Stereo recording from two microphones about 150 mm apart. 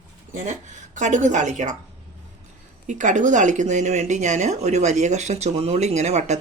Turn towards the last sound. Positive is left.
turn(degrees=-50)  # may be behind; listen again after turning